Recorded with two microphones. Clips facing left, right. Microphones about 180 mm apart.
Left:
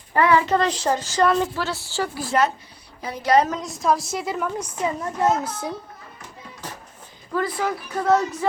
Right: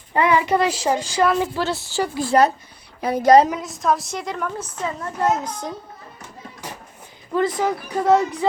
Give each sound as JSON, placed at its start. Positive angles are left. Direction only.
{"t": 0.1, "sound": "a child's voice", "side_deg": -20}
{"t": 1.5, "sound": "a woman's voice", "side_deg": -20}
{"t": 2.2, "sound": "speech", "side_deg": -35}
{"t": 3.0, "sound": "a woman's voice", "side_deg": -55}
{"t": 3.6, "sound": "a woman's voice", "side_deg": 0}
{"t": 7.3, "sound": "a child's voice", "side_deg": -20}